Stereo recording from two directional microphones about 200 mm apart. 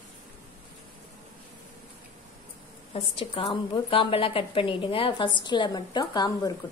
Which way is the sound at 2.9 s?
30° left (ahead or behind).